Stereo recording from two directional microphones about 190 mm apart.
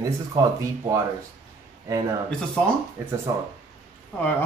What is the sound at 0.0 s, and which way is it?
Speech, 15° right (ahead or behind).